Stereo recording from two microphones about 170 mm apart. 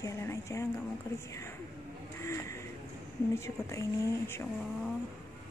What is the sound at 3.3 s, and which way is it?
Speech, 15° left (ahead or behind).